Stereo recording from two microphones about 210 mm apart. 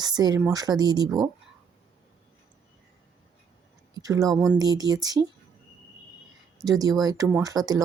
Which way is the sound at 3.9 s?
15° right (ahead or behind).